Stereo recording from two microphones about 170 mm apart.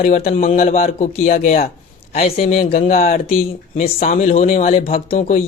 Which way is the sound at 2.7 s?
45° left (ahead or behind).